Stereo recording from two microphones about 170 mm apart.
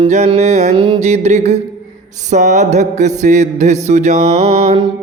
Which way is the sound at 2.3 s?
45° right (ahead or behind).